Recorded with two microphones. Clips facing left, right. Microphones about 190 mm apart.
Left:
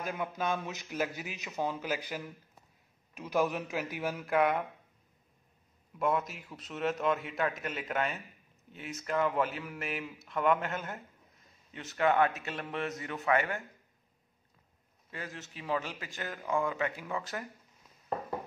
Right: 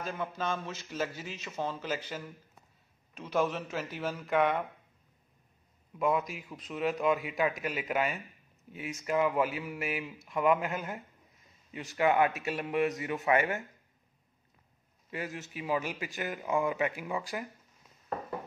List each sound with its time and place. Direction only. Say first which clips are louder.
0.0 s a man's voice: left 1 dB; 10° left (ahead or behind)
5.9 s a man's voice: right 1 dB; centre (ahead or behind); by 13.6 s 15° right (ahead or behind)
15.0 s a man's voice: right 5 dB; 15° right (ahead or behind)